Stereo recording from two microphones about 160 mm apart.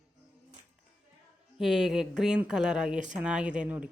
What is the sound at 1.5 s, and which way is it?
A woman's voice, 5° right (ahead or behind).